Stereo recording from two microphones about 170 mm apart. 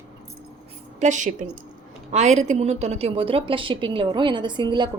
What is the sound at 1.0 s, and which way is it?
A woman's voice, 45° right (ahead or behind).